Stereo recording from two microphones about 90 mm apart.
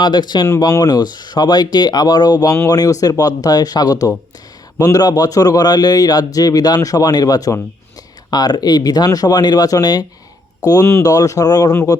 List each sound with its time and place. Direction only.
0.0 s a man's voice: 55° left (ahead or behind)
0.6 s a man's voice: 40° left (ahead or behind)